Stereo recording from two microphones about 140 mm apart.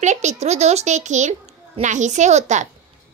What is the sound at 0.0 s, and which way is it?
A woman's voice, 55° right (ahead or behind).